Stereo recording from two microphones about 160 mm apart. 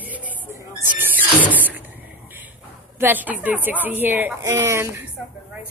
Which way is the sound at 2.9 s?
10° right (ahead or behind).